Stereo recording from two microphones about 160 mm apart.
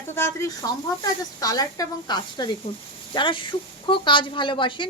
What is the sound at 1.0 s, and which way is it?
A woman's voice, 20° left (ahead or behind).